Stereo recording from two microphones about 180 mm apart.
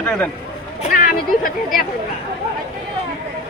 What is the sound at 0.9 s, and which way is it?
Speech, 50° left (ahead or behind).